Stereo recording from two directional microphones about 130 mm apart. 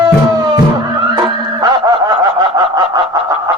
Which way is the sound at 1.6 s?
30° right (ahead or behind).